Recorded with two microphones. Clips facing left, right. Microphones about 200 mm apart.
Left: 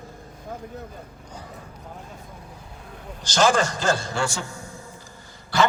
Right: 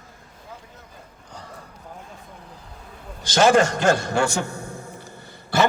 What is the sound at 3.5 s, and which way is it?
A man's voice, 60° right (ahead or behind).